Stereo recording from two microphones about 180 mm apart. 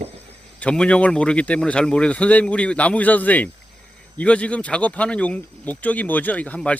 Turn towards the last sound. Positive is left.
turn(degrees=10)  # may be behind; listen again after turning